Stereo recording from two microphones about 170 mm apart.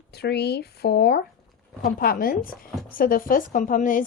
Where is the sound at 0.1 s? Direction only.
75° left (ahead or behind).